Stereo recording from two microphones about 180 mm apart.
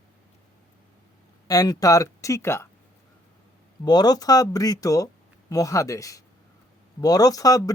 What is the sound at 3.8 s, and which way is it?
Speech, 20° left (ahead or behind).